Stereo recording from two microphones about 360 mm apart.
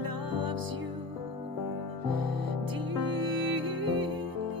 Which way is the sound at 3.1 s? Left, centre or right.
Right.